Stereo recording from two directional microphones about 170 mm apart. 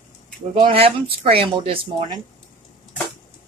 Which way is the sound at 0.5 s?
30° right (ahead or behind).